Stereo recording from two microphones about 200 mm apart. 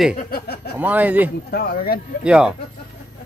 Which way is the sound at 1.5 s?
50° left (ahead or behind).